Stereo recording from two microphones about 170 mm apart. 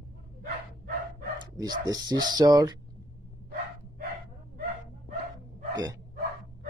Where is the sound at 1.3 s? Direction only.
25° right (ahead or behind).